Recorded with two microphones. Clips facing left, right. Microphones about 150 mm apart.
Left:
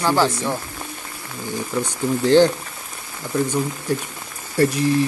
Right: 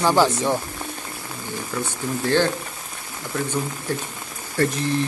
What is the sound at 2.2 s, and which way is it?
Speech, 20° left (ahead or behind).